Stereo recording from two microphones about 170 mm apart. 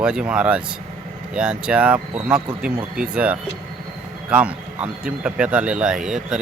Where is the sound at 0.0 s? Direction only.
5° right (ahead or behind).